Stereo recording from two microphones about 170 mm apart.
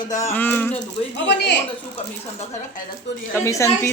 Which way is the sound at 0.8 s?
90° left.